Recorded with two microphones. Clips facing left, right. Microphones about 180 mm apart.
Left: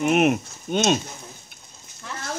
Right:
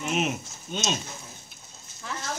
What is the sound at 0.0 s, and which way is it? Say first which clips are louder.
Speech: left 9 dB; 60° left (ahead or behind).